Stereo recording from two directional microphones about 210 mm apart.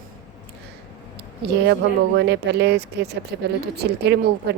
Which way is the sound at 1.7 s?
55° right (ahead or behind).